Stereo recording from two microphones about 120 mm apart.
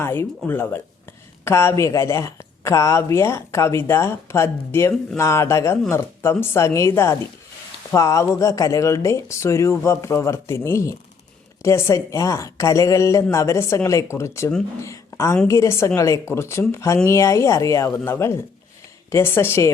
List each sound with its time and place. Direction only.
0.0 s speech: 20° left (ahead or behind)